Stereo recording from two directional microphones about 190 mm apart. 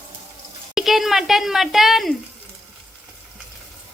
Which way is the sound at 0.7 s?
Centre (ahead or behind).